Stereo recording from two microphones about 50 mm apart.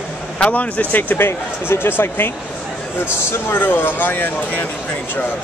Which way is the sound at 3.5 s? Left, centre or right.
Left.